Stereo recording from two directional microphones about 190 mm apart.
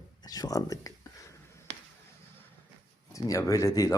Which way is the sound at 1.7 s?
65° right (ahead or behind).